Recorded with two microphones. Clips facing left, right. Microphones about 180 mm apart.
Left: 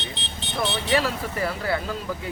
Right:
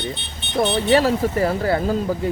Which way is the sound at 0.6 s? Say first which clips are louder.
Right 7 dB; 40° right (ahead or behind).